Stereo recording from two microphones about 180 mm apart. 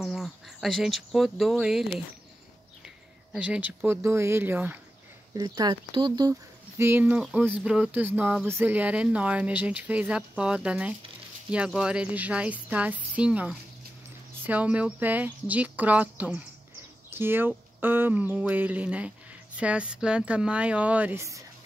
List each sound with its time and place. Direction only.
0.0 s speech: centre (ahead or behind)
3.3 s speech: 5° right (ahead or behind)
5.3 s speech: 25° right (ahead or behind)
6.8 s speech: 10° right (ahead or behind)